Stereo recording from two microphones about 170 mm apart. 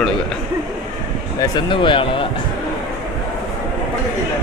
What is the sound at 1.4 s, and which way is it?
Speech, 25° left (ahead or behind).